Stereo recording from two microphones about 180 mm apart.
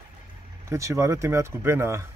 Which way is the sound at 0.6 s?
15° right (ahead or behind).